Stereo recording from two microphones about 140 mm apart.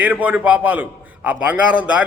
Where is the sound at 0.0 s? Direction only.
10° right (ahead or behind).